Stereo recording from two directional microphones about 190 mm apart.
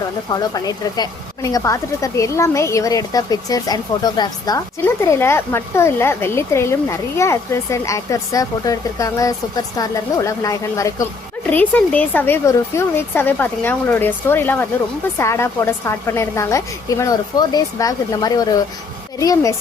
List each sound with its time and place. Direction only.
0.3 s a woman's voice: 20° left (ahead or behind)